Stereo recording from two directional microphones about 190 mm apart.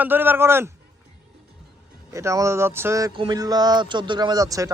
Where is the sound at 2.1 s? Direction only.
15° right (ahead or behind).